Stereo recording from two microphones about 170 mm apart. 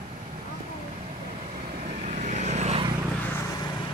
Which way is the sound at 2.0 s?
45° right (ahead or behind).